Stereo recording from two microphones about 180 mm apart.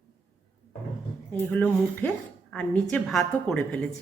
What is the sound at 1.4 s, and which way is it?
A woman's voice, 10° left (ahead or behind).